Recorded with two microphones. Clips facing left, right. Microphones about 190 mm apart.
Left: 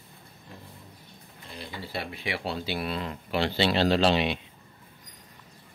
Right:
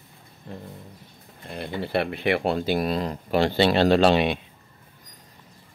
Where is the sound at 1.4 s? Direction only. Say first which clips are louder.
Right 9 dB; 60° right (ahead or behind).